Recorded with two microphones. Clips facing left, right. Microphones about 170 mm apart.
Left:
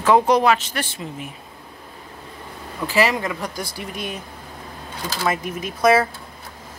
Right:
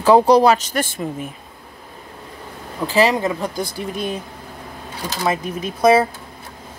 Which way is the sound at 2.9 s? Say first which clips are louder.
Right 4 dB; 30° right (ahead or behind).